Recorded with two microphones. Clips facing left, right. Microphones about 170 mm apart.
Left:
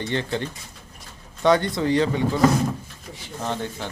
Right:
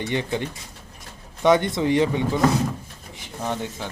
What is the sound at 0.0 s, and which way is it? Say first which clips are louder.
Speech: right 1 dB; 15° right (ahead or behind).